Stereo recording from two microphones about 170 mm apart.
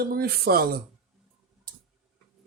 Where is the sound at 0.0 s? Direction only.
65° right (ahead or behind).